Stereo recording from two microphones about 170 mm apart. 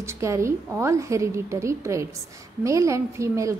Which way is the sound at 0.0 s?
15° right (ahead or behind).